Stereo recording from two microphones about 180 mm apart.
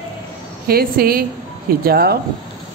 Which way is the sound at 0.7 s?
55° right (ahead or behind).